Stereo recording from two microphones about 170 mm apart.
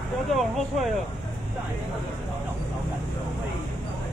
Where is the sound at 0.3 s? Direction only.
Centre (ahead or behind).